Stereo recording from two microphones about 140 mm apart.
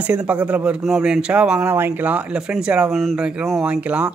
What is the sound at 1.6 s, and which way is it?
Speech, 15° right (ahead or behind).